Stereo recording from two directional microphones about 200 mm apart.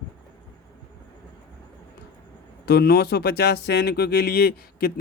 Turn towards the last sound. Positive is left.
turn(degrees=50)  # may be behind; listen again after turning